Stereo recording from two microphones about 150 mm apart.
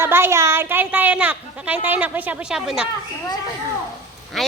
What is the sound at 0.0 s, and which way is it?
A woman's voice, 15° right (ahead or behind).